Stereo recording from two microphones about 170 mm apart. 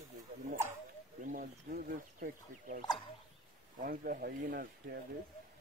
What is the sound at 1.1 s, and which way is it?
Speech, 50° right (ahead or behind).